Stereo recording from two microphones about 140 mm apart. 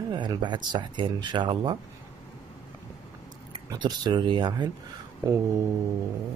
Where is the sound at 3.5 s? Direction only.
30° right (ahead or behind).